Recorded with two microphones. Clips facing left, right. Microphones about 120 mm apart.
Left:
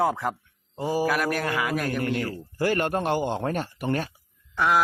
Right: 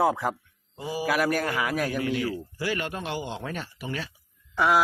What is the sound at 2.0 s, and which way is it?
Speech, 45° left (ahead or behind).